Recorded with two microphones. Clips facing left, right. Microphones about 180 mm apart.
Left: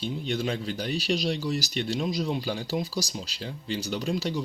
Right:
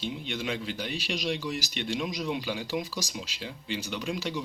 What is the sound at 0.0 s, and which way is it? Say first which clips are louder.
Speech: left 4 dB; 40° left (ahead or behind).